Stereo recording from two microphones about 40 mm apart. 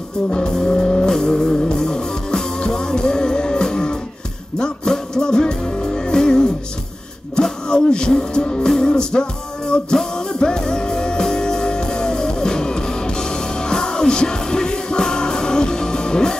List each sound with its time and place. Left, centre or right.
0.3 s music: centre
7.6 s a sound: left
8.1 s music: centre